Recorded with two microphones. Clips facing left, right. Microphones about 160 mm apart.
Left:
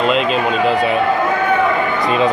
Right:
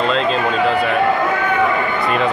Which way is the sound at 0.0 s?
15° left (ahead or behind).